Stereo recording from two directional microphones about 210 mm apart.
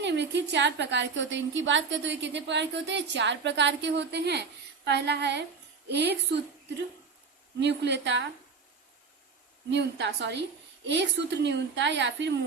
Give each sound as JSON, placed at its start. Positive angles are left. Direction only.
{"t": 0.0, "sound": "a woman's voice", "side_deg": -55}
{"t": 4.9, "sound": "a sound", "side_deg": -55}
{"t": 5.9, "sound": "a woman's voice", "side_deg": -55}
{"t": 7.6, "sound": "a woman's voice", "side_deg": -55}
{"t": 9.6, "sound": "a woman's voice", "side_deg": -60}